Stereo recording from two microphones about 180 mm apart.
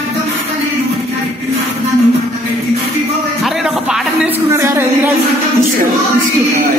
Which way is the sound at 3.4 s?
Centre (ahead or behind).